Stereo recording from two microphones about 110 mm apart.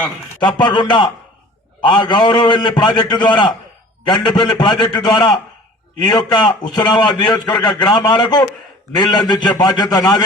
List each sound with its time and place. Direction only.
0.4 s a man's voice: 40° left (ahead or behind)